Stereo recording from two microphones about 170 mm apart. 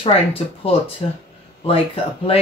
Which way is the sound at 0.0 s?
35° left (ahead or behind).